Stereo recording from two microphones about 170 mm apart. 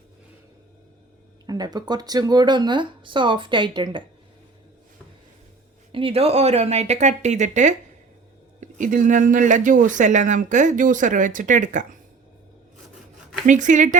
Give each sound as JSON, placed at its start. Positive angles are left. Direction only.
{"t": 1.5, "sound": "speech", "side_deg": -25}
{"t": 5.9, "sound": "speech", "side_deg": -35}
{"t": 13.5, "sound": "speech", "side_deg": -45}